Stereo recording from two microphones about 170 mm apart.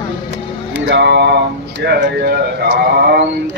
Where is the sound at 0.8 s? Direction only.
80° right.